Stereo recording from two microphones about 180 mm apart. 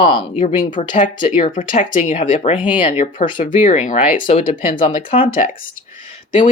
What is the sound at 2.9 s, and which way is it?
Speech, 45° left (ahead or behind).